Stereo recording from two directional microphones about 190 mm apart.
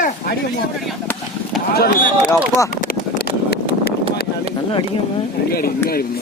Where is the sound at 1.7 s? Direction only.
50° left (ahead or behind).